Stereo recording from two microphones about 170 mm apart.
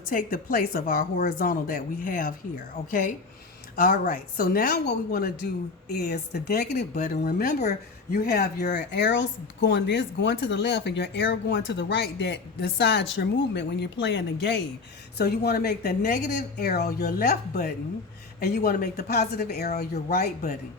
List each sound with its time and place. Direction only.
0.0 s a woman's voice: 55° left (ahead or behind); by 6.8 s 70° left (ahead or behind)
6.9 s a woman's voice: 55° left (ahead or behind)
8.7 s speech: 85° left
15.2 s a woman's voice: 70° left (ahead or behind)